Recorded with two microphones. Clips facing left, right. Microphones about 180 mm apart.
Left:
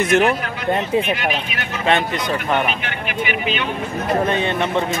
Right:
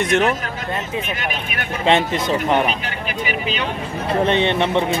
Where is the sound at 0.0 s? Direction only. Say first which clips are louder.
Left 2 dB; centre (ahead or behind).